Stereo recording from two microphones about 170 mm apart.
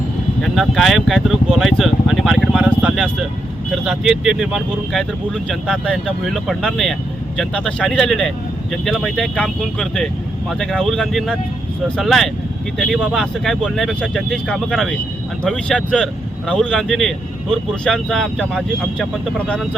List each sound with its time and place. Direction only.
0.4 s speech: centre (ahead or behind)